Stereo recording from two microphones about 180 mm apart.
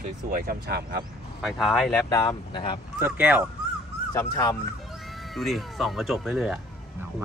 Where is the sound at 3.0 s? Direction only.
10° right (ahead or behind).